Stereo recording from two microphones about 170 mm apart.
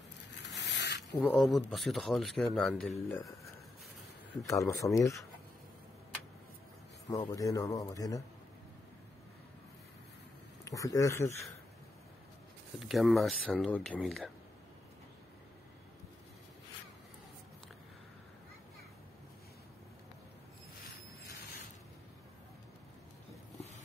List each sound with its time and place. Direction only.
0.4 s zipper: 90° left
1.2 s speech: centre (ahead or behind)
4.6 s speech: 20° left (ahead or behind)
7.1 s speech: 20° left (ahead or behind)
10.6 s speech: 20° left (ahead or behind)
12.7 s speech: centre (ahead or behind)